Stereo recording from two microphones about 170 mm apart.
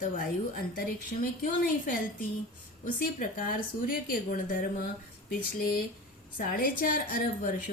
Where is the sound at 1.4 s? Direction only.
55° left (ahead or behind).